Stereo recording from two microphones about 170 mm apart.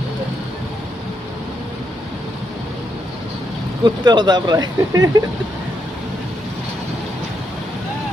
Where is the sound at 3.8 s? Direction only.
25° right (ahead or behind).